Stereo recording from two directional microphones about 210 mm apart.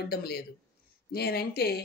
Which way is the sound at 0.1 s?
50° left (ahead or behind).